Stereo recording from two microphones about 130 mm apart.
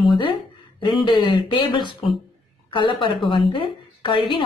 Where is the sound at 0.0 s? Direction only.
40° left (ahead or behind).